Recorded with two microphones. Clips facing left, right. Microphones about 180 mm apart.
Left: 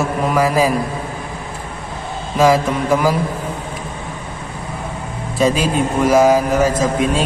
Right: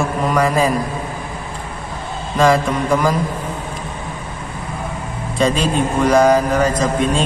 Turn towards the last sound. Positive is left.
turn(degrees=5)  # may be behind; listen again after turning